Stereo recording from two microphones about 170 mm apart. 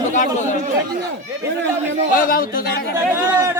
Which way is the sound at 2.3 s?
60° left (ahead or behind).